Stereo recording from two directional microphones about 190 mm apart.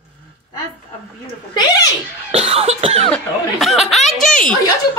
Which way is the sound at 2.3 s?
35° right (ahead or behind).